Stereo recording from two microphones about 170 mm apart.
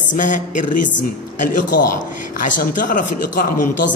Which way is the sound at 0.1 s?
50° left (ahead or behind).